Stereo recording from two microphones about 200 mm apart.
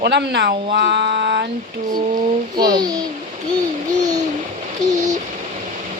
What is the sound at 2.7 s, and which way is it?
Speech, 20° right (ahead or behind).